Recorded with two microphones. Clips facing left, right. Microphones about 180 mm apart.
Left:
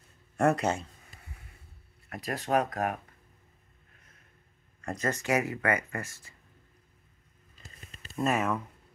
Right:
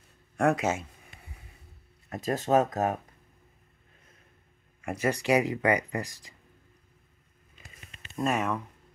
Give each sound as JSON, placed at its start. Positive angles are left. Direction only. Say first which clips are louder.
{"t": 0.4, "sound": "speech", "louder": "even", "side_deg": 0}
{"t": 2.0, "sound": "speech", "louder": "right 5 dB", "side_deg": -20}
{"t": 4.8, "sound": "speech", "louder": "right 4 dB", "side_deg": -10}
{"t": 7.9, "sound": "a sound", "louder": "left 1 dB", "side_deg": 35}
{"t": 8.2, "sound": "speech", "louder": "even", "side_deg": 5}